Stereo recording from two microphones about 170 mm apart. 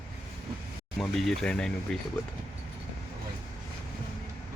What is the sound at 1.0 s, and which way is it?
Speech, centre (ahead or behind).